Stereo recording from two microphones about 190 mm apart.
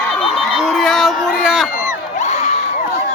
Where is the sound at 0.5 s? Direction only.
Centre (ahead or behind).